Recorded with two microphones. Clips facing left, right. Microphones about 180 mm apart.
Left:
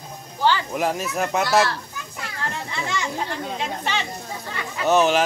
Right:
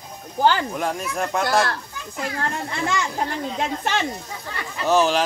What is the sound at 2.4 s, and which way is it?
A child's voice, 50° right (ahead or behind).